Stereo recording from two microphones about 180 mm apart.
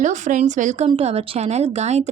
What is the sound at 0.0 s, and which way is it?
Speech, 45° right (ahead or behind).